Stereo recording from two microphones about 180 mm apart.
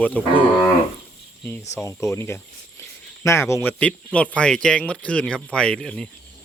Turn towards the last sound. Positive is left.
turn(degrees=5)  # may be behind; listen again after turning